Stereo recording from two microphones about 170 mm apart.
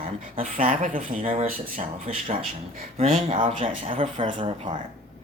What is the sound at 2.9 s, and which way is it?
Speech, 35° right (ahead or behind).